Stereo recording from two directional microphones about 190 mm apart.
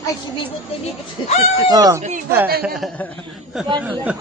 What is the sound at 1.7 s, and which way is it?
Speech, 20° right (ahead or behind).